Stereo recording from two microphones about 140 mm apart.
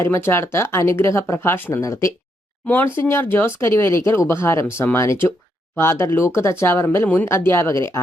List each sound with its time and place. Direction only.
0.0 s speech: 15° left (ahead or behind)